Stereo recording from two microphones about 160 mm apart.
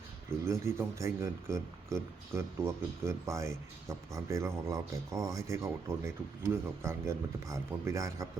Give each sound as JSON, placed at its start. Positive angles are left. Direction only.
{"t": 0.4, "sound": "speech", "side_deg": -15}